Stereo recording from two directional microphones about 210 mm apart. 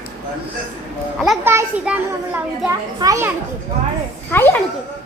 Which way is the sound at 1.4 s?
10° right (ahead or behind).